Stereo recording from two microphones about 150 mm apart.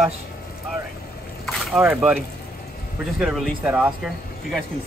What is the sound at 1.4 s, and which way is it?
Boat, centre (ahead or behind).